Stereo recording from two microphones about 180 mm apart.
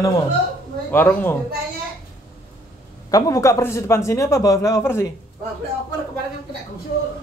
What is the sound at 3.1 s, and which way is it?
A man's voice, 20° left (ahead or behind).